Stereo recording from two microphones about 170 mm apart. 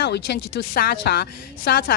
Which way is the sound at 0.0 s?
75° left (ahead or behind).